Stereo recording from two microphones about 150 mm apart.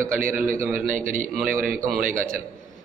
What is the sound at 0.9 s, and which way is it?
A man's voice, 60° right (ahead or behind).